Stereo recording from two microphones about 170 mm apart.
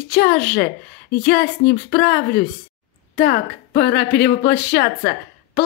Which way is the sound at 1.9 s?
55° left (ahead or behind).